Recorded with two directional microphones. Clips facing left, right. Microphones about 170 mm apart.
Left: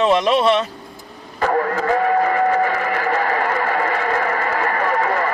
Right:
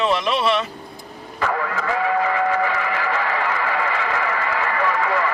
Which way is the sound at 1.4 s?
40° left (ahead or behind).